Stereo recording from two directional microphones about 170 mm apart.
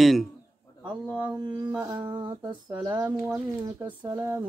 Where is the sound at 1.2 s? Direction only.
10° right (ahead or behind).